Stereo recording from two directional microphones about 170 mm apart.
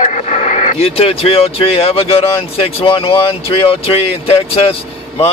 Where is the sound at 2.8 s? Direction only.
30° left (ahead or behind).